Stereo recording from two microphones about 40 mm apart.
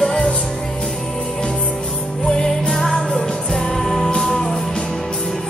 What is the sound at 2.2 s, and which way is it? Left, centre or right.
Music, centre.